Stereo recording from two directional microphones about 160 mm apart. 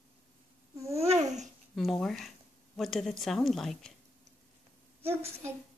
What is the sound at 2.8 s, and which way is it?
A woman's voice, centre (ahead or behind).